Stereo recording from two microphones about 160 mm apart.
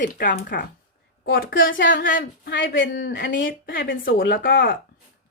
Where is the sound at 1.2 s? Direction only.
70° left (ahead or behind).